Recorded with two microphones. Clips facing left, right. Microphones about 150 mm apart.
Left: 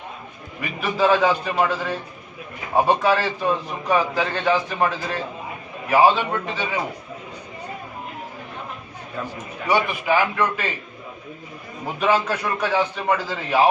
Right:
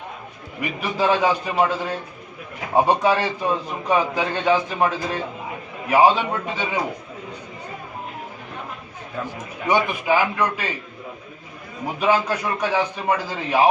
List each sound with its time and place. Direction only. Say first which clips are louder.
0.6 s a man's voice: left 1 dB; 15° right (ahead or behind)
9.6 s a man's voice: right 1 dB; 20° right (ahead or behind)
11.9 s a man's voice: even; 15° right (ahead or behind)